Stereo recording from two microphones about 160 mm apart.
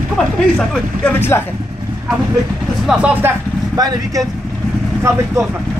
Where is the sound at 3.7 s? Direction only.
25° right (ahead or behind).